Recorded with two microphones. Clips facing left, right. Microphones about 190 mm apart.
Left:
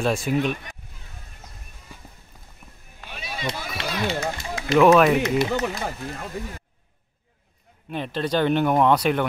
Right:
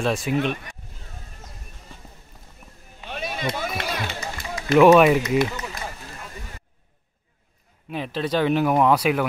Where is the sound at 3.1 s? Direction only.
50° right (ahead or behind).